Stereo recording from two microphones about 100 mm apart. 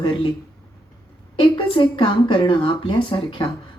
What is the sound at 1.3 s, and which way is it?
A woman's voice, 55° left (ahead or behind).